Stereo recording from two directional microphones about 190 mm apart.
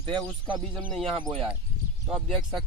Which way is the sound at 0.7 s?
5° right (ahead or behind).